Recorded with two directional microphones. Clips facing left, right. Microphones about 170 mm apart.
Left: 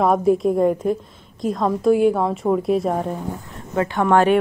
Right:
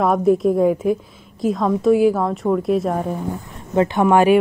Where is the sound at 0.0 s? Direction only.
Centre (ahead or behind).